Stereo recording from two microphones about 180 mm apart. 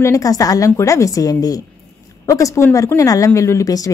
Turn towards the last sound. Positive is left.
turn(degrees=20)  # may be behind; listen again after turning